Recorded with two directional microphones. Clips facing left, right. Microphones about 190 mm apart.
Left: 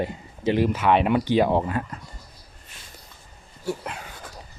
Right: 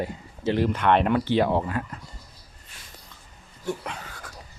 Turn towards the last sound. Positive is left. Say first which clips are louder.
# left 1 dB
turn(degrees=5)  # may be behind; listen again after turning